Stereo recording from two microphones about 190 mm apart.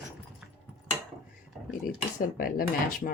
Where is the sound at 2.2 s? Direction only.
50° left (ahead or behind).